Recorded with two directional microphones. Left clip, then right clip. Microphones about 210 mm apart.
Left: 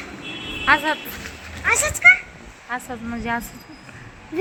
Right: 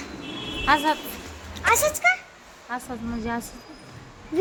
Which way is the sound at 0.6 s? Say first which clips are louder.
Left 3 dB; centre (ahead or behind).